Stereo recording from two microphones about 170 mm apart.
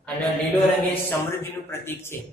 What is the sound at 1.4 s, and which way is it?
Speech, 15° left (ahead or behind).